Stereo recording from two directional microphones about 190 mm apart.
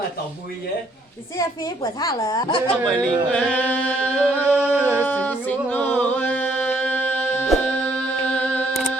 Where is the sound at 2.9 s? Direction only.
5° left (ahead or behind).